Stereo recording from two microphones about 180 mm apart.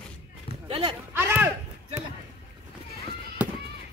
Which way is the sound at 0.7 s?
30° right (ahead or behind).